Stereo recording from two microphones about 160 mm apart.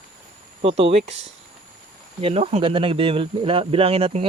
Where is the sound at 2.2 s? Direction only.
40° right (ahead or behind).